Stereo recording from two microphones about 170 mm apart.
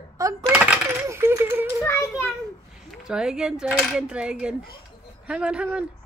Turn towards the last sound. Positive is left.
turn(degrees=-5)  # may be behind; listen again after turning